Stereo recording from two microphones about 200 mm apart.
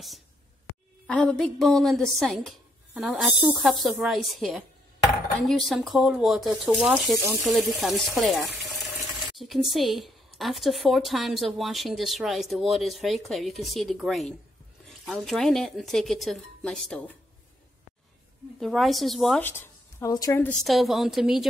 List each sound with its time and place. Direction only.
0.7 s a sound: 60° left (ahead or behind)
1.0 s a woman's voice: 5° left (ahead or behind)
18.6 s a woman's voice: centre (ahead or behind)
20.6 s a woman's voice: centre (ahead or behind)